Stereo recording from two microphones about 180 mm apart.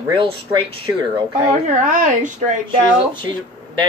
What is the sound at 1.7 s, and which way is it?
Speech, 45° right (ahead or behind).